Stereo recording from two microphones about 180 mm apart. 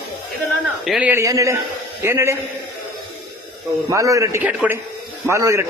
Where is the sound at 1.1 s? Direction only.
15° right (ahead or behind).